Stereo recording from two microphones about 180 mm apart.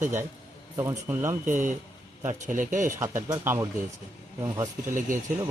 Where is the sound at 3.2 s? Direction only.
15° right (ahead or behind).